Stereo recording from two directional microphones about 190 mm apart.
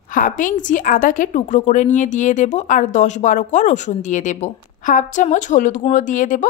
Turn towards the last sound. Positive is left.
turn(degrees=45)  # may be behind; listen again after turning